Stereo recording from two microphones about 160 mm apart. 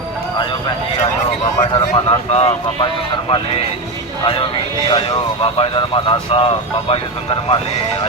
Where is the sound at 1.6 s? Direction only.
30° left (ahead or behind).